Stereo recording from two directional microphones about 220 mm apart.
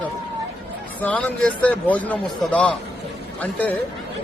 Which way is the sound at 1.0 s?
5° left (ahead or behind).